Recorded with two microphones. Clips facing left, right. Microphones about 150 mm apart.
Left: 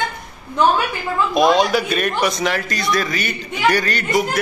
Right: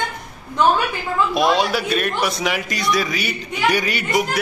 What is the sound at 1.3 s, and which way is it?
A man's voice, 5° right (ahead or behind).